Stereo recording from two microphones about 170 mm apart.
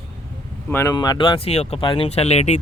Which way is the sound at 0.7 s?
20° left (ahead or behind).